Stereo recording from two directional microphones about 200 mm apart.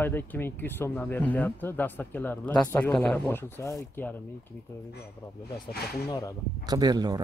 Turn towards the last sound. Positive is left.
turn(degrees=-20)  # may be behind; listen again after turning